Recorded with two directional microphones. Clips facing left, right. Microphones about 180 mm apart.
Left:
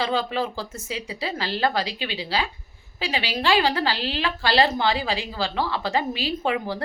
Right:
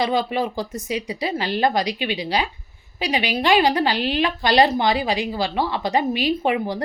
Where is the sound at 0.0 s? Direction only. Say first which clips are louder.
Right 3 dB; 15° right (ahead or behind).